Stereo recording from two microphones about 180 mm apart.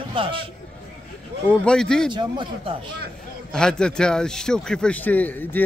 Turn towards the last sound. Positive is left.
turn(degrees=10)  # may be behind; listen again after turning